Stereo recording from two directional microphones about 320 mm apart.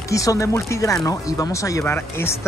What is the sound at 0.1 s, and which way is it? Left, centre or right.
Speech, centre.